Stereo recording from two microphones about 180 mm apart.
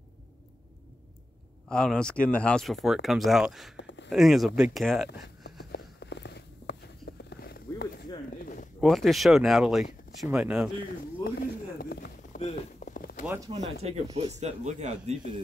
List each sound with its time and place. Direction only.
1.7 s speech: 5° left (ahead or behind)
3.7 s a sound: 85° left
4.1 s speech: centre (ahead or behind)
5.2 s a sound: 60° left (ahead or behind)
8.8 s speech: centre (ahead or behind)
11.8 s a sound: 60° left (ahead or behind)
12.4 s clip-clop: 45° left (ahead or behind)
13.2 s speech: 10° right (ahead or behind)
13.5 s speech: 35° right (ahead or behind)